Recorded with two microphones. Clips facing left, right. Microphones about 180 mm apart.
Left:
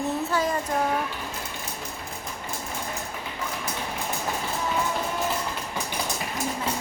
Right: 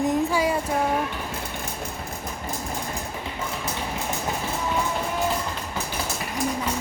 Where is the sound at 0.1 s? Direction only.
10° right (ahead or behind).